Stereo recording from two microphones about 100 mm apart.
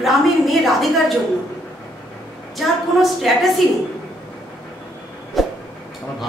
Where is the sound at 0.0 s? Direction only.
Centre (ahead or behind).